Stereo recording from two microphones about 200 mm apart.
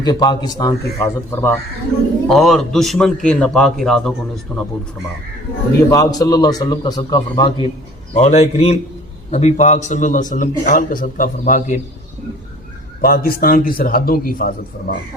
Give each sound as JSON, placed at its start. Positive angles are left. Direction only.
{"t": 0.0, "sound": "speech", "side_deg": 20}
{"t": 2.2, "sound": "a man's voice", "side_deg": 0}
{"t": 5.9, "sound": "a man's voice", "side_deg": 20}
{"t": 8.1, "sound": "a man's voice", "side_deg": 35}
{"t": 13.0, "sound": "speech", "side_deg": 45}